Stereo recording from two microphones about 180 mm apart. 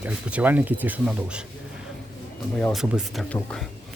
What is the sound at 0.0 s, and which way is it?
Speech, 10° right (ahead or behind).